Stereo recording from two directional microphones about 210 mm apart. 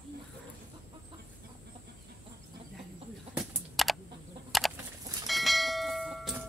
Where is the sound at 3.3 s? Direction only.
Centre (ahead or behind).